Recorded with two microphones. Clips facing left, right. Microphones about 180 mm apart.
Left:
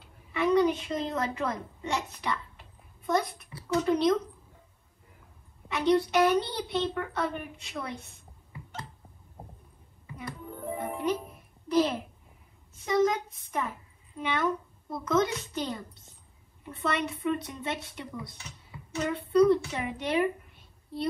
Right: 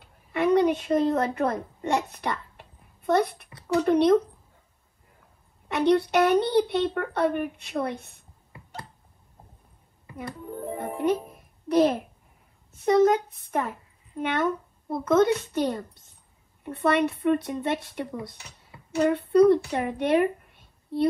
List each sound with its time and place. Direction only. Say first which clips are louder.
0.3 s a child's voice: right 3 dB; 60° right (ahead or behind)
5.7 s a woman's voice: right 3 dB; 60° right (ahead or behind)
11.7 s a woman's voice: right 5 dB; 55° right (ahead or behind)